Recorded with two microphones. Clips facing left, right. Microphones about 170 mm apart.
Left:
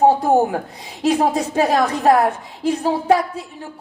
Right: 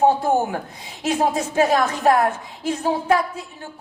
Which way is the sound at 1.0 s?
35° left (ahead or behind).